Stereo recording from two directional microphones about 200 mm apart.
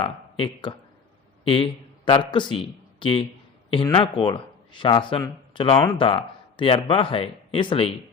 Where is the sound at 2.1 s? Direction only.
25° left (ahead or behind).